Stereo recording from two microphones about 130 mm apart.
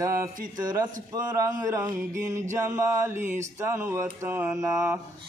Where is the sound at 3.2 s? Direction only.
75° right (ahead or behind).